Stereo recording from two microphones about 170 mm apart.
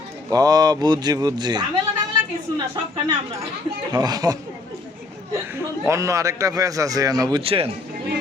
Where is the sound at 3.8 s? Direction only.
20° right (ahead or behind).